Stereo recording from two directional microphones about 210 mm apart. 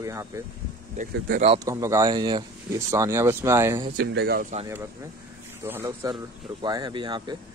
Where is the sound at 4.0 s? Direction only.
50° right (ahead or behind).